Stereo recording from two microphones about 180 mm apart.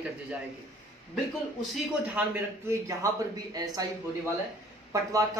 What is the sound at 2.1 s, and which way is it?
Speech, 10° right (ahead or behind).